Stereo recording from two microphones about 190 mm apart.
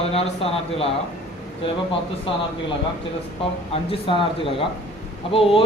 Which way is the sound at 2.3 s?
30° left (ahead or behind).